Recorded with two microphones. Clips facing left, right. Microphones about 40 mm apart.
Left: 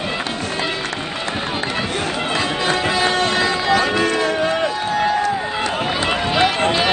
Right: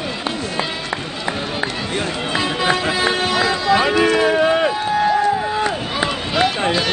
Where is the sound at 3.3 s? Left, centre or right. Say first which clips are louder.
Even; centre.